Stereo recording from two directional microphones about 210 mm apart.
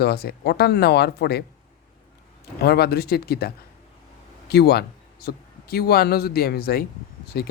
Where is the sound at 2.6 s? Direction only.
50° left (ahead or behind).